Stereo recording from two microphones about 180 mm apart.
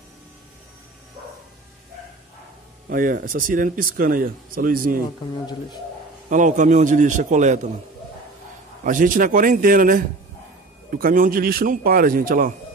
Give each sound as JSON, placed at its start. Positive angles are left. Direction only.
{"t": 2.9, "sound": "speech", "side_deg": -50}
{"t": 6.2, "sound": "speech", "side_deg": -45}
{"t": 8.8, "sound": "speech", "side_deg": -45}